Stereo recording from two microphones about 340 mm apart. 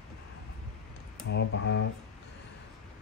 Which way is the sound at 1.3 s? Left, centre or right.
Left.